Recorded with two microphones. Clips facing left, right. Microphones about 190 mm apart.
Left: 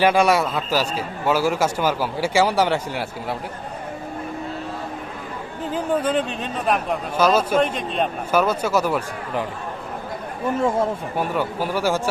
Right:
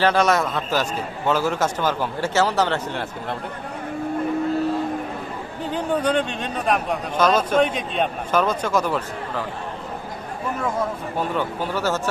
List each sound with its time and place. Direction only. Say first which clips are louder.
0.0 s a man's voice: left 2 dB; 10° left (ahead or behind)
5.7 s a man's voice: even; 5° left (ahead or behind)
10.6 s speech: left 4 dB; 25° left (ahead or behind)
11.2 s a man's voice: even; 10° left (ahead or behind)